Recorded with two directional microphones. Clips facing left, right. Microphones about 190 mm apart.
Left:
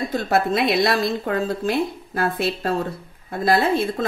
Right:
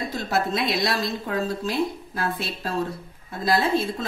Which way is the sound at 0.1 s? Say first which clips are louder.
Left 6 dB; 55° left (ahead or behind).